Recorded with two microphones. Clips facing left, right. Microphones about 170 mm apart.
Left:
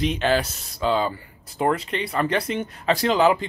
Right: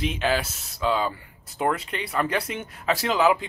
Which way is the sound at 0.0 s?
5° right (ahead or behind).